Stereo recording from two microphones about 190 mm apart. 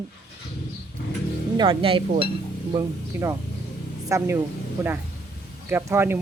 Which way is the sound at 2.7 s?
15° right (ahead or behind).